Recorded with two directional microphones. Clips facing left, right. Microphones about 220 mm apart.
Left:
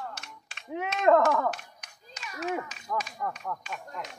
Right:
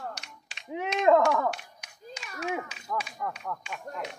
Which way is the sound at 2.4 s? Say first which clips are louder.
Left 1 dB; 10° right (ahead or behind).